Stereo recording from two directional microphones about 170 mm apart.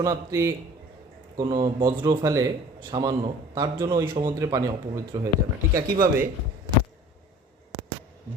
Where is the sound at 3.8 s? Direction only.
30° right (ahead or behind).